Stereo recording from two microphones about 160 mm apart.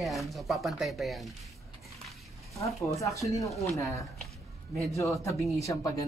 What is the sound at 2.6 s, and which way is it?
Speech, 20° left (ahead or behind).